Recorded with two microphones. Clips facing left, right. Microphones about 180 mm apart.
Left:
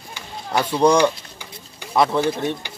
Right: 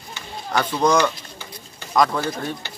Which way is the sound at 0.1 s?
10° left (ahead or behind).